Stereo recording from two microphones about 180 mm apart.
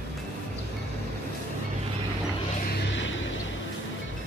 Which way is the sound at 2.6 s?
90° left.